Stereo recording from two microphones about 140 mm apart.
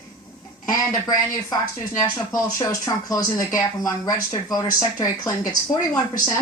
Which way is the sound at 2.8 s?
25° left (ahead or behind).